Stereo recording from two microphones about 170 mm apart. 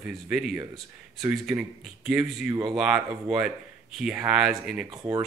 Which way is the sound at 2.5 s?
25° right (ahead or behind).